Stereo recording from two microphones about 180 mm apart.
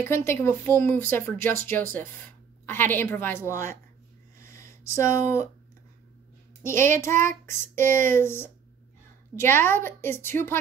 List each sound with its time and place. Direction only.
0.0 s speech: 15° left (ahead or behind)
4.4 s a sound: 15° left (ahead or behind)
7.0 s speech: 15° left (ahead or behind)